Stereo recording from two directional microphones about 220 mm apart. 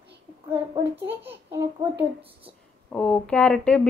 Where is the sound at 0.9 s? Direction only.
50° right (ahead or behind).